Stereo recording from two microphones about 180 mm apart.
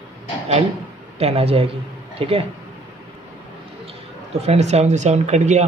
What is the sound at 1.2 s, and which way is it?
Speech, 35° right (ahead or behind).